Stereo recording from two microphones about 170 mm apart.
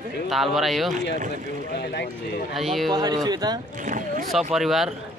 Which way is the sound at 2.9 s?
25° right (ahead or behind).